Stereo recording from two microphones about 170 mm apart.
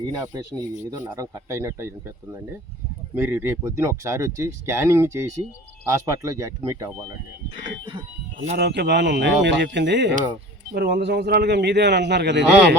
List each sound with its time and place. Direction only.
0.1 s speech: 20° right (ahead or behind)
3.2 s speech: 15° right (ahead or behind)
8.5 s speech: 85° right
10.8 s a man's voice: 70° right (ahead or behind); by 12.7 s 90° right